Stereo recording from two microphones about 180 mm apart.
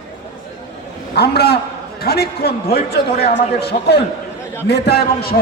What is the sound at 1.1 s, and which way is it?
A man's voice, 65° left (ahead or behind).